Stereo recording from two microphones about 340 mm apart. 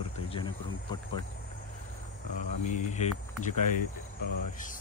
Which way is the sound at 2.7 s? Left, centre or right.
Left.